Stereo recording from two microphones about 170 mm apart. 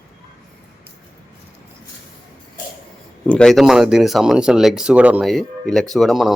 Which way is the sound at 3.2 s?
5° left (ahead or behind).